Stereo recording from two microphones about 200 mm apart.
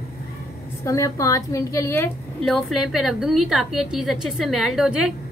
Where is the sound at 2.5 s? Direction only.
Centre (ahead or behind).